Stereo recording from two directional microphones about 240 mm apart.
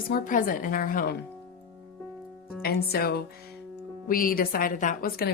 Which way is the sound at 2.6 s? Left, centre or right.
Left.